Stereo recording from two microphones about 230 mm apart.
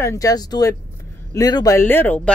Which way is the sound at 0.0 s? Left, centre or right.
Centre.